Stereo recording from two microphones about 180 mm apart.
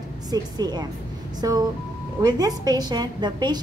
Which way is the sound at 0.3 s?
20° right (ahead or behind).